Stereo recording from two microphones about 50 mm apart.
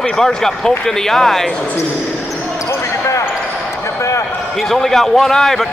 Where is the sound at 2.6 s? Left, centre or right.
Left.